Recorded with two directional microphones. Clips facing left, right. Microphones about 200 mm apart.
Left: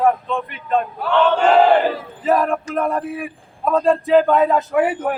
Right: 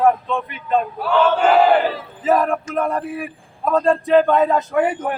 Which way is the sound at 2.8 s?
Centre (ahead or behind).